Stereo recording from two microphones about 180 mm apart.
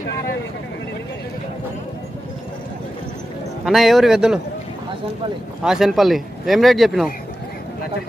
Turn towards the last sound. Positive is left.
turn(degrees=0)  # may be behind; listen again after turning